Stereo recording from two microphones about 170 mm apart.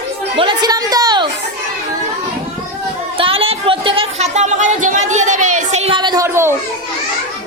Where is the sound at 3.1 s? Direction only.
30° right (ahead or behind).